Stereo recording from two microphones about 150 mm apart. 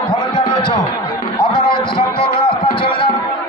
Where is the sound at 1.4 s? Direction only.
30° left (ahead or behind).